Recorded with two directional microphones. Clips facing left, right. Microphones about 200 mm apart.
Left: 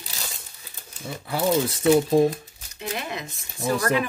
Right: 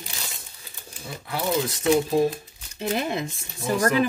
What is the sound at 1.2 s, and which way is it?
Speech, 30° left (ahead or behind).